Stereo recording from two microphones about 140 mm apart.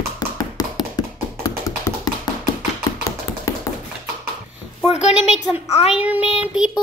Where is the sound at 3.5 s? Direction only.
25° left (ahead or behind).